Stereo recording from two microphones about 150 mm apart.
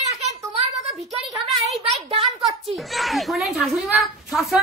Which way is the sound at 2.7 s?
Centre (ahead or behind).